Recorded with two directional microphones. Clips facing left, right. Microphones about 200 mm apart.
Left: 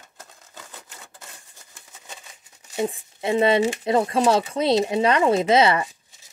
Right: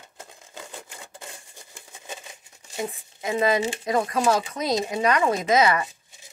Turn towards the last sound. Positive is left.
turn(degrees=30)  # may be behind; listen again after turning